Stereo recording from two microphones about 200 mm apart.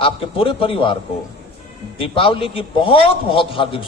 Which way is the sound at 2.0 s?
25° left (ahead or behind).